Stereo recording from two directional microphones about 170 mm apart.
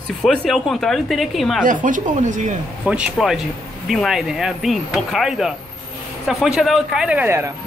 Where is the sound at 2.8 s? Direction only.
5° right (ahead or behind).